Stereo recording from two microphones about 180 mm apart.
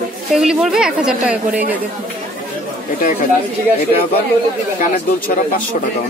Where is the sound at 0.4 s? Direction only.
5° right (ahead or behind).